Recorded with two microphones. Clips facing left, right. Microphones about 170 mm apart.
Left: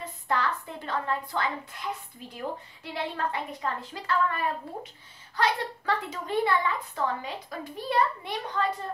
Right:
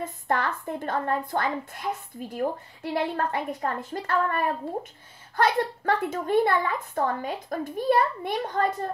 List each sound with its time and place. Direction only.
0.0 s a woman's voice: 50° right (ahead or behind)